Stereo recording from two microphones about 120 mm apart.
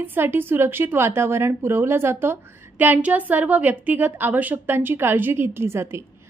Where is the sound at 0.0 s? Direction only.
15° right (ahead or behind).